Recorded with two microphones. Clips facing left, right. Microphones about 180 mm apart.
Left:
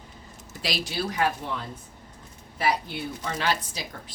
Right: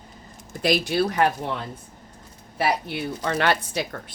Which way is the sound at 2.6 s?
65° right (ahead or behind).